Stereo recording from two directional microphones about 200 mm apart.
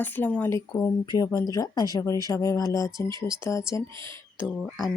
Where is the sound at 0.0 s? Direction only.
10° left (ahead or behind).